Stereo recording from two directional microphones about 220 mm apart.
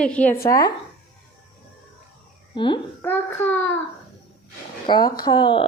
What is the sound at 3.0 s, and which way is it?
Speech, 10° left (ahead or behind).